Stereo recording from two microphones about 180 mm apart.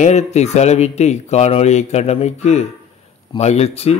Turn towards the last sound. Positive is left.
turn(degrees=35)  # may be behind; listen again after turning